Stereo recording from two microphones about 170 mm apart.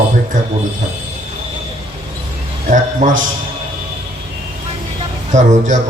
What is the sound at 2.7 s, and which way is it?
Speech, 50° right (ahead or behind).